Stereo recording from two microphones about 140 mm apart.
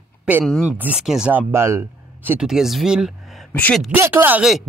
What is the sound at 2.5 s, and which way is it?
Speech, 5° right (ahead or behind).